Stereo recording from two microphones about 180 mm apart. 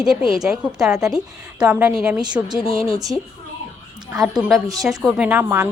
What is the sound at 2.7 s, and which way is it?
Speech, 20° right (ahead or behind).